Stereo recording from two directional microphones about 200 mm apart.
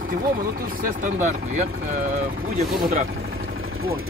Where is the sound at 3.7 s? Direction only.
90° right.